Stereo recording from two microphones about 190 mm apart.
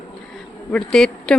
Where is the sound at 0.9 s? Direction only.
Centre (ahead or behind).